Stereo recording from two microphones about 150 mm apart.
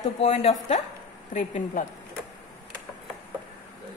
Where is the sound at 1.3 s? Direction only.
55° left (ahead or behind).